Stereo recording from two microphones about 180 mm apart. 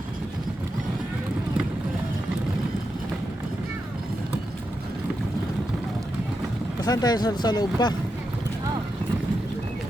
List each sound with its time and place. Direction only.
6.8 s speech: 20° left (ahead or behind)